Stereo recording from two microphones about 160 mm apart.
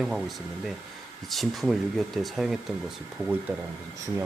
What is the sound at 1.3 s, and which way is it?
Speech, centre (ahead or behind).